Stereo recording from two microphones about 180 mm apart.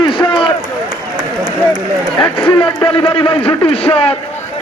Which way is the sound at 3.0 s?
30° left (ahead or behind).